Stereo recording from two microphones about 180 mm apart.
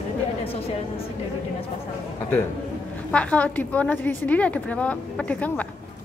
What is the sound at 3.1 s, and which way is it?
A woman's voice, 10° left (ahead or behind).